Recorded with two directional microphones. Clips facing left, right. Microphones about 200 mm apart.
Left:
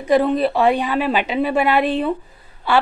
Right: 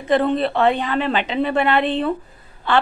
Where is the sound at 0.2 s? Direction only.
5° left (ahead or behind).